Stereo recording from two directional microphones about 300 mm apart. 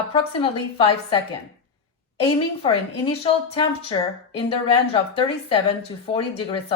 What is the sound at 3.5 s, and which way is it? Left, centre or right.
A woman's voice, centre.